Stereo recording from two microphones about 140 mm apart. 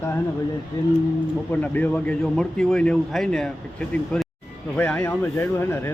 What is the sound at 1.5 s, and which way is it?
Speech, 10° left (ahead or behind).